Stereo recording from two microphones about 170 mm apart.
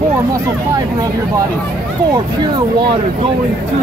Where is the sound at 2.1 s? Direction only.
25° right (ahead or behind).